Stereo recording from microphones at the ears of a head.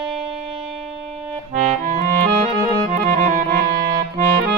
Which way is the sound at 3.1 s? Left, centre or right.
Right.